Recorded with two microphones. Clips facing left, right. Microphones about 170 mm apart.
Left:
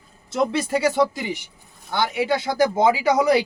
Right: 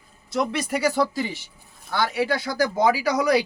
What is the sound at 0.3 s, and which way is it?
Speech, 25° left (ahead or behind).